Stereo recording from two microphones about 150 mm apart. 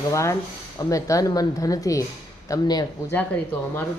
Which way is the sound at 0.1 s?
20° left (ahead or behind).